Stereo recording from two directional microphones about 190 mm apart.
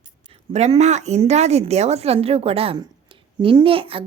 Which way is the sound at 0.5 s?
35° right (ahead or behind).